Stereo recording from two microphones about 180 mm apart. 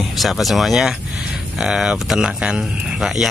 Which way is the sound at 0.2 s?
Centre (ahead or behind).